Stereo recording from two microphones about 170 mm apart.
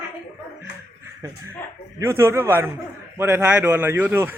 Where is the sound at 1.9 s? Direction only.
15° right (ahead or behind).